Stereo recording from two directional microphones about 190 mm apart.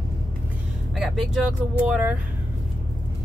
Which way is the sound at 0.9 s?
Centre (ahead or behind).